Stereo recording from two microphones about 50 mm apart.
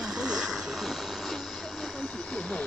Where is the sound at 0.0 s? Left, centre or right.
Centre.